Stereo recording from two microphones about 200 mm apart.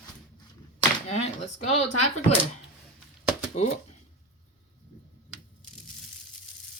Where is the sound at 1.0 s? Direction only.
35° left (ahead or behind).